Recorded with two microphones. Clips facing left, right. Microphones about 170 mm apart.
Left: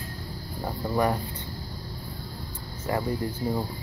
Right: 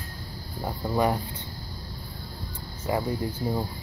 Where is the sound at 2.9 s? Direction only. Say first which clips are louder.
Right 1 dB; 20° right (ahead or behind).